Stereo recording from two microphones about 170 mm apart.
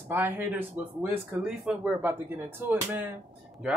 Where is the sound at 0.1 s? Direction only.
10° right (ahead or behind).